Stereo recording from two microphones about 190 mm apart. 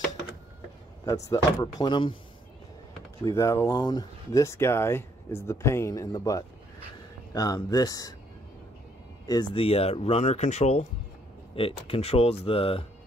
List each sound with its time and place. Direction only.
1.0 s speech: 20° left (ahead or behind)
3.3 s speech: 15° left (ahead or behind)
9.3 s speech: 25° left (ahead or behind)